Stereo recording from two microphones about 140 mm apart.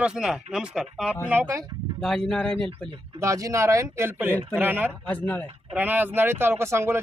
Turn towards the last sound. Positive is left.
turn(degrees=-20)  # may be behind; listen again after turning